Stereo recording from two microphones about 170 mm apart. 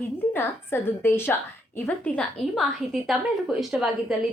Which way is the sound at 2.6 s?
Centre (ahead or behind).